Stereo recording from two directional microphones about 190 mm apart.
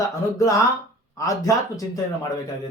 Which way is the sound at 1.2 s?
15° left (ahead or behind).